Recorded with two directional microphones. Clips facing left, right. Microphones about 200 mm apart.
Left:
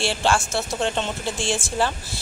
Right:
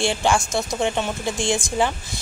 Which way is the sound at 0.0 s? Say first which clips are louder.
Right 2 dB; 15° right (ahead or behind).